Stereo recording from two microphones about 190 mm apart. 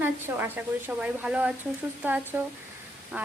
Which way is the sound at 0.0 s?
10° right (ahead or behind).